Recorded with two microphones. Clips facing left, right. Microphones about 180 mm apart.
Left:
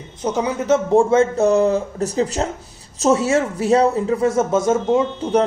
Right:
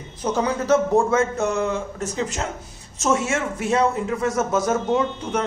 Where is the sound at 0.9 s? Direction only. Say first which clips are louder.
Left 5 dB; 30° left (ahead or behind).